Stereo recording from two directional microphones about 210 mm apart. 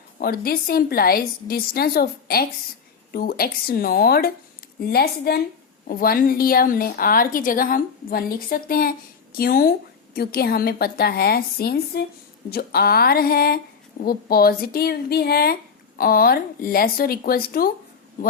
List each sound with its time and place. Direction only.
0.2 s a woman's voice: 45° left (ahead or behind)